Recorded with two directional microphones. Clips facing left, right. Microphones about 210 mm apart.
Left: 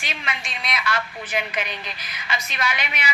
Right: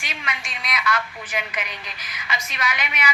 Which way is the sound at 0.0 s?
30° left (ahead or behind).